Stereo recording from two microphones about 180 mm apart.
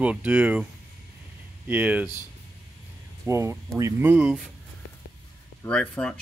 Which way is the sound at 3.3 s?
15° right (ahead or behind).